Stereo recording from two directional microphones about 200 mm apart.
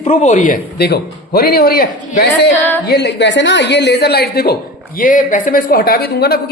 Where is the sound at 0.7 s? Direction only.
55° left (ahead or behind).